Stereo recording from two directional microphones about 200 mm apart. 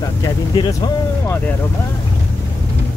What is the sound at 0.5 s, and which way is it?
Speech, 20° left (ahead or behind).